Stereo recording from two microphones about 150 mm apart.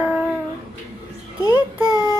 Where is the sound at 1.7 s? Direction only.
25° left (ahead or behind).